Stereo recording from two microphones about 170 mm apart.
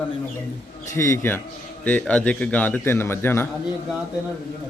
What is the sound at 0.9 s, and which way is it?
A man's voice, 15° left (ahead or behind).